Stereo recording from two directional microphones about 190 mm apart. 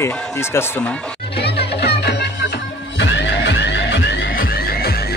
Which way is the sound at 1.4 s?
60° left (ahead or behind).